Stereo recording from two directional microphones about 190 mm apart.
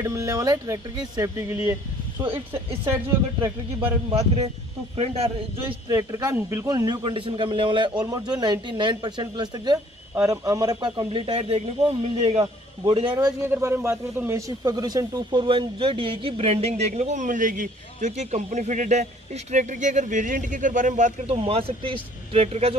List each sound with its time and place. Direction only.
0.0 s speech: 15° right (ahead or behind)
4.1 s speech: 35° right (ahead or behind)
5.9 s a man's voice: 20° right (ahead or behind)
13.1 s speech: 15° right (ahead or behind); by 22.8 s 35° right (ahead or behind)